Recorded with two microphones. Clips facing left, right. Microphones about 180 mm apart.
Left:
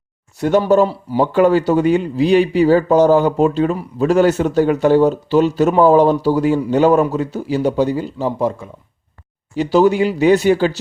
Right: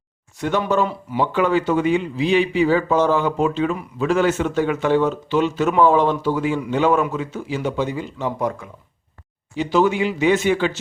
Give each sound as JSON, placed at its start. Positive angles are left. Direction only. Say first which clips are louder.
{"t": 0.3, "sound": "speech", "louder": "left 7 dB", "side_deg": 40}
{"t": 9.6, "sound": "speech", "louder": "left 5 dB", "side_deg": 40}